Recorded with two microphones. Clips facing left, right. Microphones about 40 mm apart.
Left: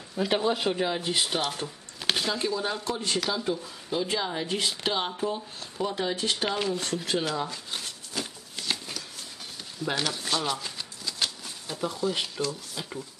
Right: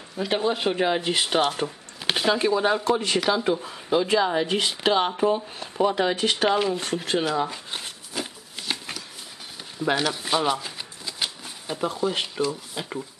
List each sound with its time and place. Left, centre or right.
0.1 s speech: centre
0.4 s speech: centre
0.7 s speech: right
2.5 s speech: right
5.9 s speech: right
6.5 s speech: centre
7.2 s shuffling cards: right
9.9 s speech: centre